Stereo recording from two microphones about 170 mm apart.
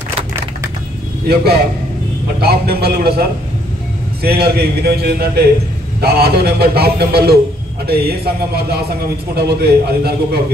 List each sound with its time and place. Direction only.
1.2 s a man's voice: 70° right (ahead or behind)
9.3 s a man's voice: 70° right (ahead or behind)